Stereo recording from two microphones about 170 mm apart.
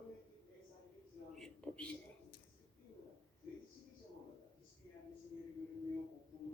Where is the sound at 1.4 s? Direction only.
5° left (ahead or behind).